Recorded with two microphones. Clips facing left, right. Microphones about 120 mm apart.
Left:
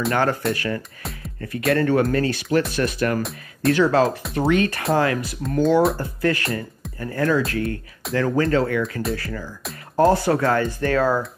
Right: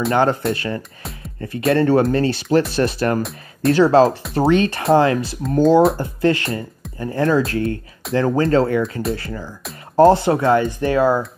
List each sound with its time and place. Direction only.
0.1 s speech: 25° right (ahead or behind)
3.2 s speech: centre (ahead or behind)
3.7 s speech: 30° right (ahead or behind)